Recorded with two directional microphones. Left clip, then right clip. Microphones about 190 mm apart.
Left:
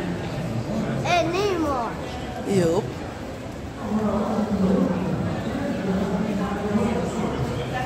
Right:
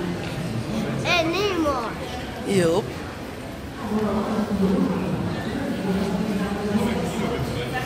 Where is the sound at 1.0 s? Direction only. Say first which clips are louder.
Even; 55° left (ahead or behind).